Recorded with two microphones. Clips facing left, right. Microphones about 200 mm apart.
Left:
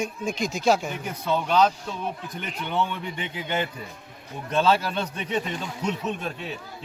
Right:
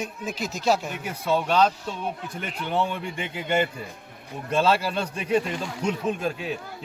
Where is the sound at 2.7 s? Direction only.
35° right (ahead or behind).